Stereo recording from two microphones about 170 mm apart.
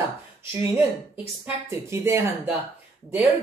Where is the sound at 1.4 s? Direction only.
15° right (ahead or behind).